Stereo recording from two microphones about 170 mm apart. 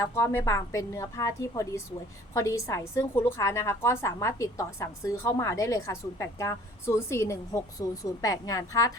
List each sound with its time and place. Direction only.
0.0 s a woman's voice: 15° left (ahead or behind)